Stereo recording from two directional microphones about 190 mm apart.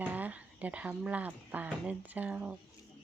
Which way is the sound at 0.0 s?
10° right (ahead or behind).